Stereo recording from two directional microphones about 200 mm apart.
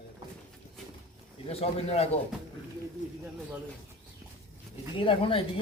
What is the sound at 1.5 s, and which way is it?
Speech, 30° left (ahead or behind).